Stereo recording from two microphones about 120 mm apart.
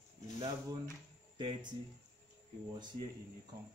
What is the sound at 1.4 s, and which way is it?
Speech, 40° right (ahead or behind).